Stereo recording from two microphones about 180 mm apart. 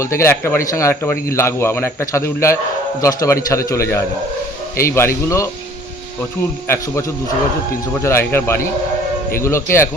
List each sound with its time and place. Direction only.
0.0 s speech: 15° left (ahead or behind)
7.9 s speech: 15° left (ahead or behind)